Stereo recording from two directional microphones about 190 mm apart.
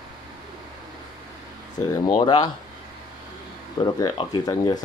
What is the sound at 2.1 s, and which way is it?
Speech, 25° left (ahead or behind).